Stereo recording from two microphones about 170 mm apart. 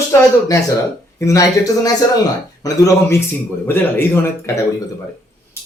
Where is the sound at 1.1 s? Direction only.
20° left (ahead or behind).